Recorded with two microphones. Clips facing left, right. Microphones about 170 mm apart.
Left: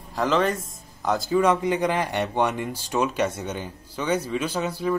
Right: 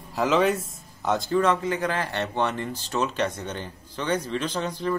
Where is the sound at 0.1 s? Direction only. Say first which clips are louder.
Right 1 dB; 5° right (ahead or behind).